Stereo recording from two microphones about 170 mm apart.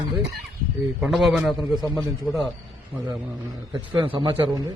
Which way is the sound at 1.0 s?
Centre (ahead or behind).